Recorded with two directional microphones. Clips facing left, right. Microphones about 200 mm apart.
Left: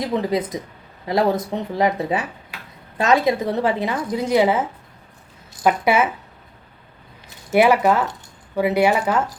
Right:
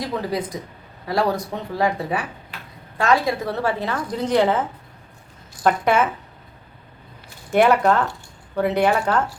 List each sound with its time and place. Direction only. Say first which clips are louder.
0.1 s a woman's voice: left 4 dB; 20° left (ahead or behind)
5.6 s a woman's voice: left 1 dB; 10° left (ahead or behind)
7.5 s a woman's voice: left 1 dB; 5° left (ahead or behind)